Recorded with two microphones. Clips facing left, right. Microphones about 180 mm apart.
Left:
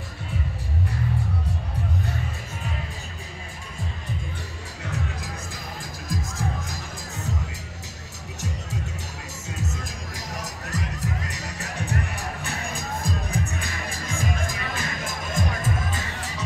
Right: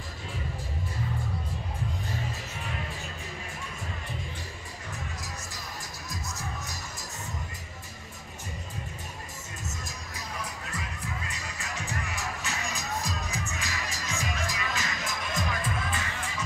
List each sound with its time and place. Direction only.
6.0 s music: 90° left
9.7 s music: 85° left; by 16.4 s 40° left (ahead or behind)